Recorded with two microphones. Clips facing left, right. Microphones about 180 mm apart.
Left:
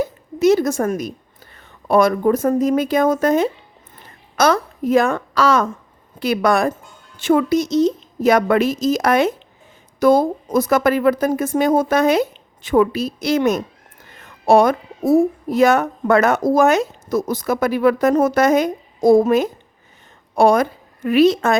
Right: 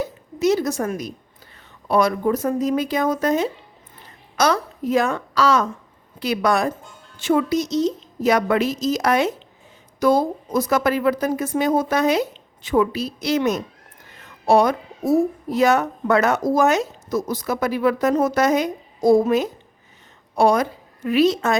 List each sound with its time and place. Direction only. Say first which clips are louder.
0.0 s a woman's voice: left 5 dB; 55° left (ahead or behind)